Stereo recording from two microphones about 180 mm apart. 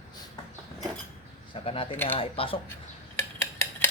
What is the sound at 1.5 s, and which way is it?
Speech, 30° left (ahead or behind).